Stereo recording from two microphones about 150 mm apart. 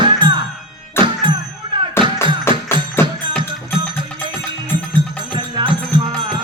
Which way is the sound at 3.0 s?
15° left (ahead or behind).